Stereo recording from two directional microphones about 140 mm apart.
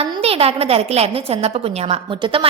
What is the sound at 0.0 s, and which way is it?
A woman's voice, 45° right (ahead or behind).